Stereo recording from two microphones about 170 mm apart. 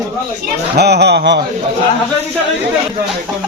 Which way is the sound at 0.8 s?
75° right (ahead or behind).